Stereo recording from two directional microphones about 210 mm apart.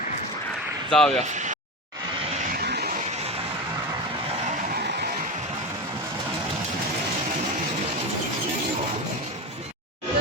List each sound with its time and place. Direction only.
0.9 s speech: centre (ahead or behind)
1.2 s speech: 35° right (ahead or behind)
2.6 s vehicle: 50° right (ahead or behind)